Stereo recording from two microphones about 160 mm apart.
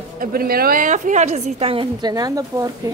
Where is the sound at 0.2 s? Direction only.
65° right (ahead or behind); by 2.7 s 20° right (ahead or behind).